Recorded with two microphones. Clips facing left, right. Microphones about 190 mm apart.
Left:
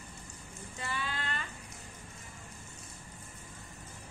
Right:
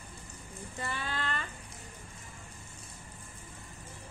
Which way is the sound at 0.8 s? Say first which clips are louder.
Right 1 dB; 50° right (ahead or behind).